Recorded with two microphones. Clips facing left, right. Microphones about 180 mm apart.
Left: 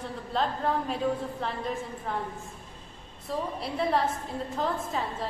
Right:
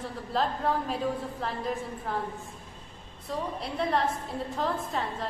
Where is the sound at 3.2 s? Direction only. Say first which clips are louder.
Left 1 dB; centre (ahead or behind).